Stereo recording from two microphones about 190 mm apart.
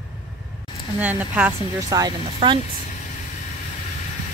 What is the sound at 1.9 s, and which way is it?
Speech, 25° right (ahead or behind).